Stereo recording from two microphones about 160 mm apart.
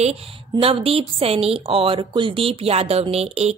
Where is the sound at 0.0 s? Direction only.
35° right (ahead or behind).